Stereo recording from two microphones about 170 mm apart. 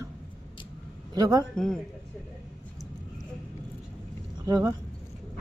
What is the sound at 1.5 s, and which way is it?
Speech, 5° left (ahead or behind).